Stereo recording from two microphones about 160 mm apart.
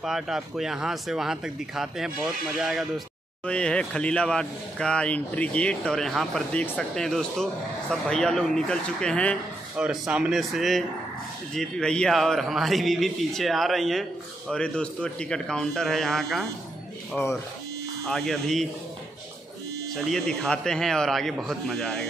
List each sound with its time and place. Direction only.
0.0 s a man's voice: 5° right (ahead or behind)
9.8 s a man's voice: 5° right (ahead or behind)
17.1 s speech: 15° left (ahead or behind)
18.0 s a man's voice: 5° left (ahead or behind)
20.0 s a man's voice: centre (ahead or behind)